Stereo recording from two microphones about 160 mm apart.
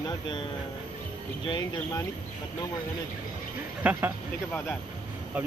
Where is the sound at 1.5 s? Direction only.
20° left (ahead or behind).